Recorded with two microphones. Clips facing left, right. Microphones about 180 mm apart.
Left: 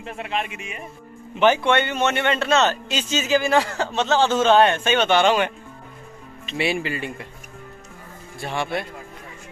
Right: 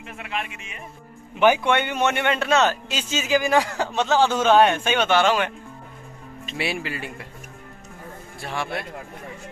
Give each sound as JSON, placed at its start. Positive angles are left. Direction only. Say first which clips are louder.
{"t": 0.0, "sound": "speech", "louder": "left 4 dB", "side_deg": 30}
{"t": 1.3, "sound": "speech", "louder": "left 1 dB", "side_deg": -10}
{"t": 6.5, "sound": "speech", "louder": "left 4 dB", "side_deg": 0}
{"t": 8.4, "sound": "speech", "louder": "left 3 dB", "side_deg": 0}